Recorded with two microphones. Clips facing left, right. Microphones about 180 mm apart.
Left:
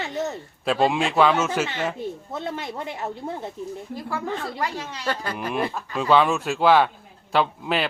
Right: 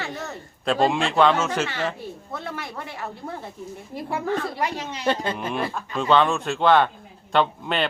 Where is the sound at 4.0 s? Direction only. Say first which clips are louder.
Right 5 dB; 20° right (ahead or behind).